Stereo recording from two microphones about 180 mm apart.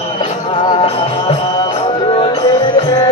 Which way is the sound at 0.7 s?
30° left (ahead or behind).